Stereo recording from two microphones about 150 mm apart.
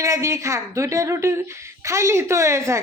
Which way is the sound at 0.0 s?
20° right (ahead or behind).